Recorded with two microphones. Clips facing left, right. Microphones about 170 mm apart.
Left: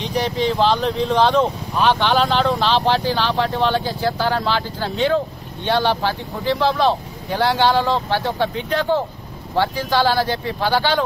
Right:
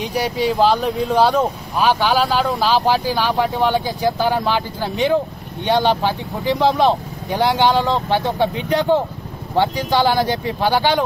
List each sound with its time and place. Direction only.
0.0 s speech: 10° right (ahead or behind)